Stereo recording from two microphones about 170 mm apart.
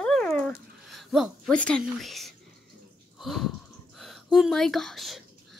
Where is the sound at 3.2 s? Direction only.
Centre (ahead or behind).